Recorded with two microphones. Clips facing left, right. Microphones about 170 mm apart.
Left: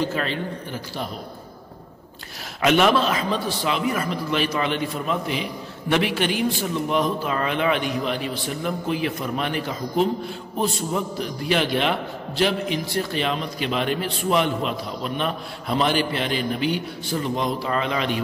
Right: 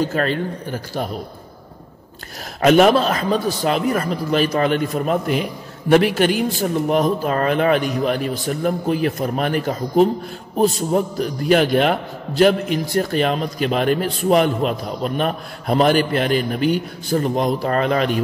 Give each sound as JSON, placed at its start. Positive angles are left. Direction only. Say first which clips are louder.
{"t": 0.0, "sound": "a man's voice", "louder": "right 5 dB", "side_deg": -45}
{"t": 2.6, "sound": "a man's voice", "louder": "right 5 dB", "side_deg": -40}